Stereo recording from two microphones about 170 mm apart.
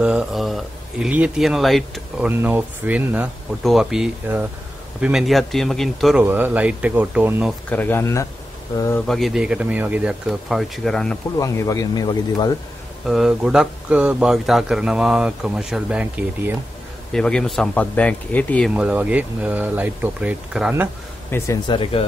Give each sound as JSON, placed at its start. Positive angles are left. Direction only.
{"t": 0.0, "sound": "a man's voice", "side_deg": -5}
{"t": 6.2, "sound": "speech", "side_deg": -10}
{"t": 7.7, "sound": "speech", "side_deg": 10}
{"t": 9.0, "sound": "a man's voice", "side_deg": 0}
{"t": 11.3, "sound": "speech", "side_deg": 20}
{"t": 13.0, "sound": "a man's voice", "side_deg": 0}
{"t": 17.1, "sound": "a man's voice", "side_deg": 5}
{"t": 18.8, "sound": "speech", "side_deg": -10}
{"t": 21.3, "sound": "speech", "side_deg": 15}
{"t": 21.6, "sound": "speech", "side_deg": 30}